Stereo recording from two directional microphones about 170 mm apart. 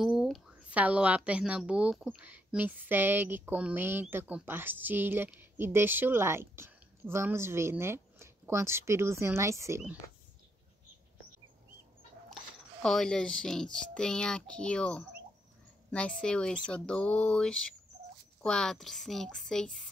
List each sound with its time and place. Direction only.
0.0 s a woman's voice: centre (ahead or behind)
12.8 s speech: 5° left (ahead or behind)